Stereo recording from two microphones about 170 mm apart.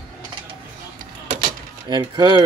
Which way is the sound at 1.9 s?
25° right (ahead or behind).